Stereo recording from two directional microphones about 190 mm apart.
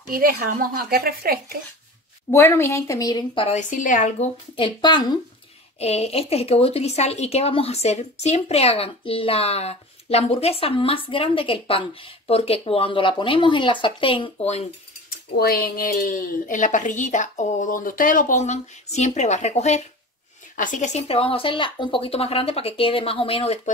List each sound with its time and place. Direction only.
0.1 s speech: 50° right (ahead or behind)
2.3 s a woman's voice: 15° left (ahead or behind)
3.4 s speech: 40° left (ahead or behind)
4.6 s a woman's voice: 25° left (ahead or behind)
5.8 s speech: 35° left (ahead or behind)
15.0 s a woman's voice: 55° left (ahead or behind); by 23.7 s 35° left (ahead or behind)